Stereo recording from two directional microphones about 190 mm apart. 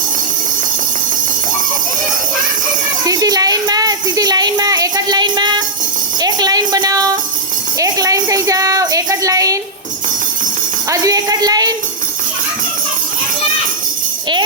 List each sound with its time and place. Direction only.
3.0 s speech: 20° right (ahead or behind)
6.1 s a sound: 20° right (ahead or behind)
7.8 s a woman's voice: 20° right (ahead or behind)
10.8 s speech: 20° right (ahead or behind)